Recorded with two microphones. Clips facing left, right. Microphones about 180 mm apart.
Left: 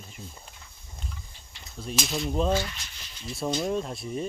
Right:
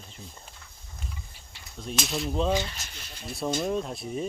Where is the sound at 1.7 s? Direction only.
Centre (ahead or behind).